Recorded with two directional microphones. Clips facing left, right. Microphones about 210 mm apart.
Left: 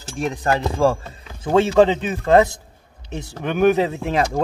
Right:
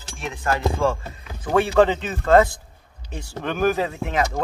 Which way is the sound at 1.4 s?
20° left (ahead or behind).